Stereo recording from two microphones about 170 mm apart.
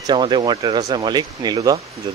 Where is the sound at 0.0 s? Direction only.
25° right (ahead or behind).